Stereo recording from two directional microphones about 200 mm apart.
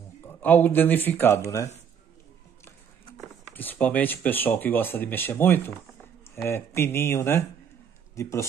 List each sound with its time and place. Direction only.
0.4 s speech: 10° left (ahead or behind)
3.5 s speech: 10° left (ahead or behind)